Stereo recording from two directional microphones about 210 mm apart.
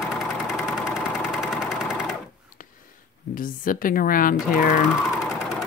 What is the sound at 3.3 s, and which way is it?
Speech, 40° left (ahead or behind).